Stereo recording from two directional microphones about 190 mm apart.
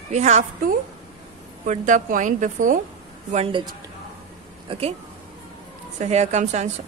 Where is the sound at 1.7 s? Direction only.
40° right (ahead or behind).